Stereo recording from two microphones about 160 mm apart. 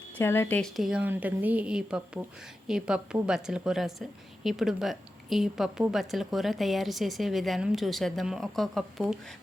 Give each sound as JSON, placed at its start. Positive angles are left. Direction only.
{"t": 0.2, "sound": "a woman's voice", "side_deg": 15}
{"t": 0.8, "sound": "a woman's voice", "side_deg": -5}